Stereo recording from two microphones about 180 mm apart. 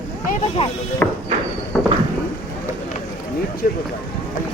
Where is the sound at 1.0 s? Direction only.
10° left (ahead or behind).